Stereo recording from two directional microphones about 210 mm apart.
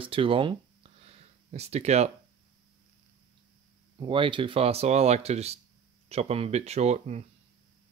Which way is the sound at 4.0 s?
25° right (ahead or behind).